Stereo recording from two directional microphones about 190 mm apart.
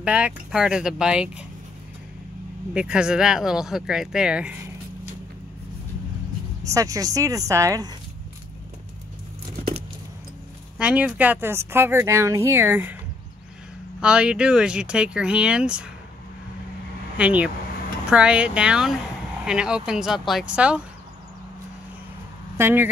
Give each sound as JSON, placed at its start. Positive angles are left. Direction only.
{"t": 0.0, "sound": "speech", "side_deg": -5}
{"t": 2.7, "sound": "speech", "side_deg": -5}
{"t": 6.6, "sound": "speech", "side_deg": -15}
{"t": 10.8, "sound": "speech", "side_deg": -5}
{"t": 14.0, "sound": "speech", "side_deg": -5}
{"t": 17.2, "sound": "speech", "side_deg": -5}
{"t": 22.6, "sound": "speech", "side_deg": -10}